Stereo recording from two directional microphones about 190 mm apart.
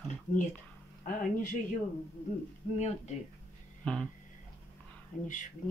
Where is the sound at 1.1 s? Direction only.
45° left (ahead or behind).